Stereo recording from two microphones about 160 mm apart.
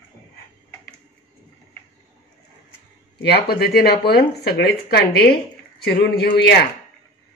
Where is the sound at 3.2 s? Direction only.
80° left.